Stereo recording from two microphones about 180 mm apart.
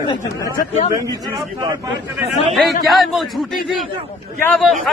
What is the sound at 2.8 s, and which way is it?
Speech, centre (ahead or behind).